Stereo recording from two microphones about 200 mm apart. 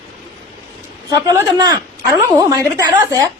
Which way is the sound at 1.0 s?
15° right (ahead or behind).